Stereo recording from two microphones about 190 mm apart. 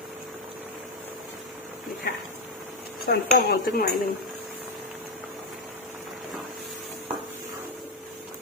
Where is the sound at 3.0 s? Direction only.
55° left (ahead or behind).